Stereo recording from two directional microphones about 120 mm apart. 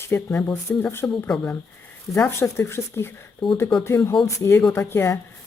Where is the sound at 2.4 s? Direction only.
20° left (ahead or behind).